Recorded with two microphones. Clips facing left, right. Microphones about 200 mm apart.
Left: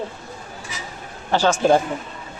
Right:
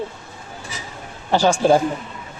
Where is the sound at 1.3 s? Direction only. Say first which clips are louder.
Right 2 dB; 15° right (ahead or behind).